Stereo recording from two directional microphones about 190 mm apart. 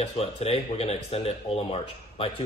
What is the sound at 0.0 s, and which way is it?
Speech, 30° left (ahead or behind).